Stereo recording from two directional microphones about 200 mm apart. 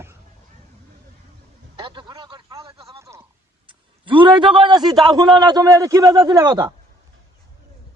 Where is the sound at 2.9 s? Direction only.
15° right (ahead or behind).